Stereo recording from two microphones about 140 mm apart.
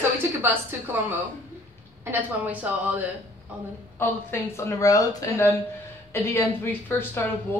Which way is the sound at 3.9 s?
15° left (ahead or behind).